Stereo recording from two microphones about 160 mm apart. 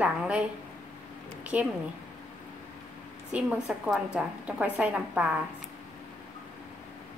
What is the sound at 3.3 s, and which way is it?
A woman's voice, 5° right (ahead or behind).